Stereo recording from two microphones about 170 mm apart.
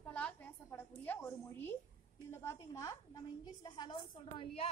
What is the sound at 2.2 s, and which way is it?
A woman's voice, 15° left (ahead or behind).